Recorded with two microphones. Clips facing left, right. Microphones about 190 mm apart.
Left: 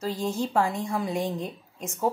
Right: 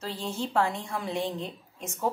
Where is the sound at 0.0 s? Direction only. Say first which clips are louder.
Left 5 dB; 10° left (ahead or behind).